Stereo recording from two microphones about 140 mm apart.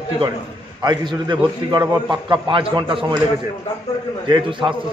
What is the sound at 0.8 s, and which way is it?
A man's voice, 30° right (ahead or behind).